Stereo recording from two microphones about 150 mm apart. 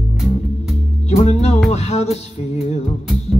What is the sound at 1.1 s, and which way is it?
Music, 45° left (ahead or behind).